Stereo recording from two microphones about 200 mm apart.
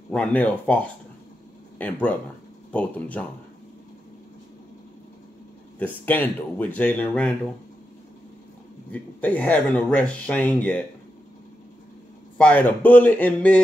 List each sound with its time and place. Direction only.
0.1 s speech: 5° left (ahead or behind)
5.8 s speech: 10° left (ahead or behind)
8.9 s speech: 10° left (ahead or behind)
12.4 s speech: 5° left (ahead or behind)